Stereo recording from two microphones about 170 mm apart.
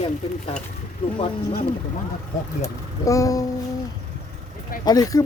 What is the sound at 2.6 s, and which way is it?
Speech, 20° left (ahead or behind).